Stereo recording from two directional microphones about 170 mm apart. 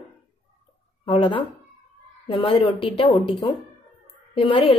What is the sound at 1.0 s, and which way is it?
A woman's voice, 30° left (ahead or behind).